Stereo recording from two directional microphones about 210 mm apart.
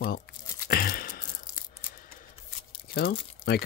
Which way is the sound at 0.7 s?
45° left (ahead or behind).